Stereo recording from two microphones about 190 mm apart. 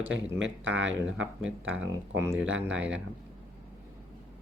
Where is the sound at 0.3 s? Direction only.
80° right.